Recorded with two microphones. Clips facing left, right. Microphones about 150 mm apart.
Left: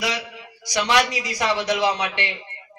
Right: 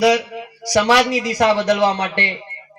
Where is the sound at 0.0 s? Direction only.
40° right (ahead or behind).